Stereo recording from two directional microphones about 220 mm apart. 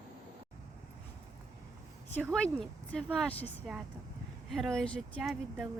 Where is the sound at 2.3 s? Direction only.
5° left (ahead or behind).